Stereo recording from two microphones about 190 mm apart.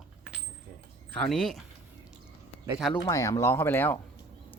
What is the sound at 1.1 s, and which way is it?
Speech, 5° left (ahead or behind).